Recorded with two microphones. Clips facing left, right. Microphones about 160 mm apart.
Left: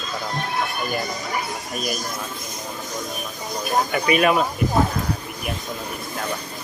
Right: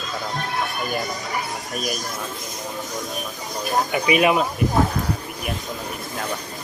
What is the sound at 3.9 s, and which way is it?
Speech, 15° right (ahead or behind).